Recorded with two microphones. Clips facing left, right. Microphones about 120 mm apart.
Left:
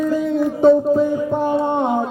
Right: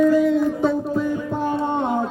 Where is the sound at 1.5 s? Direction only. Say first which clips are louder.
Left 2 dB; 15° left (ahead or behind).